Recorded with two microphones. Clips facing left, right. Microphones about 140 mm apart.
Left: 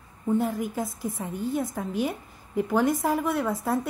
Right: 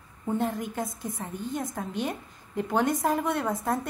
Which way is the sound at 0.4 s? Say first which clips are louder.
Left 2 dB; centre (ahead or behind).